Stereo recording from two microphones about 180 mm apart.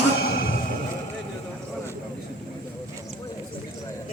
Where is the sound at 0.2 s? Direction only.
60° left (ahead or behind).